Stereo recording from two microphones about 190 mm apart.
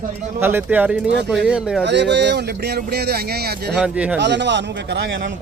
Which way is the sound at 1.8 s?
65° right (ahead or behind).